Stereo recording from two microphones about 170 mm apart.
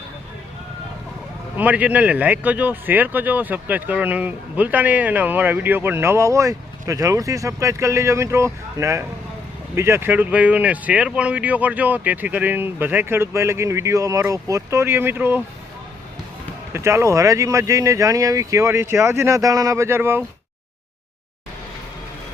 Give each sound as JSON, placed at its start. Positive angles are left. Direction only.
{"t": 1.5, "sound": "speech", "side_deg": -10}
{"t": 16.7, "sound": "speech", "side_deg": -15}